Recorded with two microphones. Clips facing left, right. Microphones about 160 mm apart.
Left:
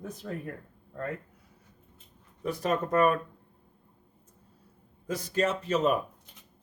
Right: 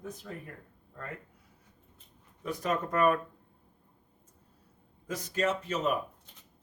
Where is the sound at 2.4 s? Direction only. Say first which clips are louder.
Left 3 dB; 35° left (ahead or behind).